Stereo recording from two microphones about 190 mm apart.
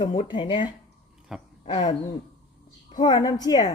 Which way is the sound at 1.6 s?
25° left (ahead or behind).